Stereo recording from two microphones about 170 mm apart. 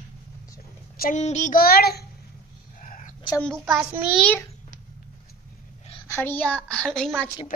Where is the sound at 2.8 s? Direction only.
50° left (ahead or behind).